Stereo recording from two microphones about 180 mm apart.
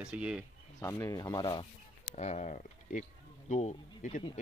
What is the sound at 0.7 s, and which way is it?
Rub, 15° left (ahead or behind).